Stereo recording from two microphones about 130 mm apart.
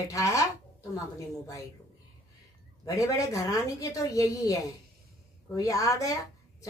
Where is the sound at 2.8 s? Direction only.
25° left (ahead or behind).